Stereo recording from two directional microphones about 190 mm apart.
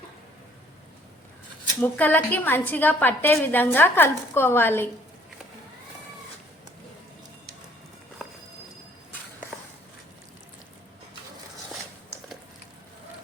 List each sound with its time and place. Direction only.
1.8 s a woman's voice: 10° left (ahead or behind)